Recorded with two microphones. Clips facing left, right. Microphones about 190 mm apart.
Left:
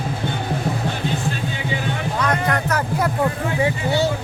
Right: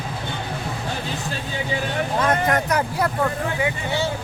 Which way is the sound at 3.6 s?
35° left (ahead or behind).